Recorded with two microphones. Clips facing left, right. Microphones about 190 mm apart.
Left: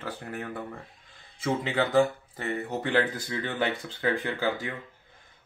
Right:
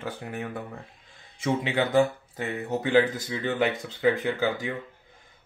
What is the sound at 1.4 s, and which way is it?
Speech, 10° right (ahead or behind).